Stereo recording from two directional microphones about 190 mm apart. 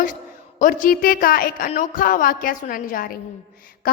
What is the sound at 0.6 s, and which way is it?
A woman's voice, 45° left (ahead or behind).